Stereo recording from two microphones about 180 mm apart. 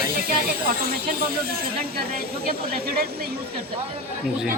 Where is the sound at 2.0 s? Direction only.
60° right (ahead or behind).